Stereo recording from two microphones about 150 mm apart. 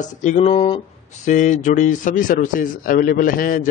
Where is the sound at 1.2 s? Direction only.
55° left (ahead or behind).